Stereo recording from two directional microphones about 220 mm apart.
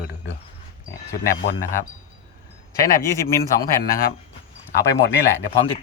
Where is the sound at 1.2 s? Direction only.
40° left (ahead or behind).